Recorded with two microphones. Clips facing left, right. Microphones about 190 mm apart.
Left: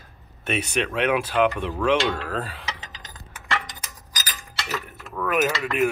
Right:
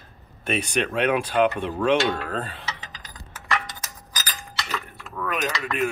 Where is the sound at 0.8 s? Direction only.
40° right (ahead or behind).